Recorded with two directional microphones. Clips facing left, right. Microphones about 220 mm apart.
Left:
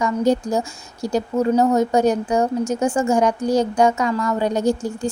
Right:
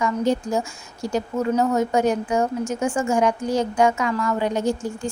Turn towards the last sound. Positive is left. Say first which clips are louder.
# left 3 dB
turn(degrees=40)  # may be behind; listen again after turning